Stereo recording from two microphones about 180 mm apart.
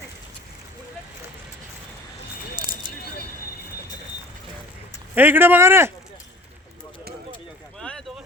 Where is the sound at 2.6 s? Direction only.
25° right (ahead or behind).